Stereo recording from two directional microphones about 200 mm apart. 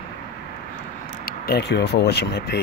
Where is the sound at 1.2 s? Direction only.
50° left (ahead or behind).